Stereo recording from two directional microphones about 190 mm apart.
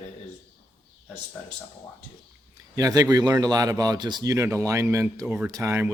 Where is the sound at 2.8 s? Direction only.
15° right (ahead or behind).